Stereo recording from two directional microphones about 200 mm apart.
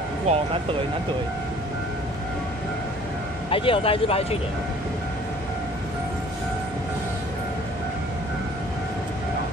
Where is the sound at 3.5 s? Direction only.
25° left (ahead or behind).